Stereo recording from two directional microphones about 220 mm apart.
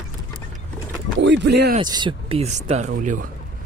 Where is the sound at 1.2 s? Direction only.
50° right (ahead or behind).